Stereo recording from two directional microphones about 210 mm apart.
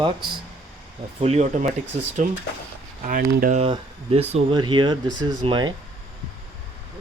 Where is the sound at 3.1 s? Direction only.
40° right (ahead or behind).